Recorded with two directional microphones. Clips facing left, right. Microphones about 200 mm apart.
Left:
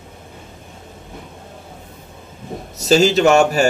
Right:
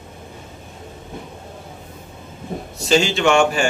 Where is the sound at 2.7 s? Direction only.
40° left (ahead or behind).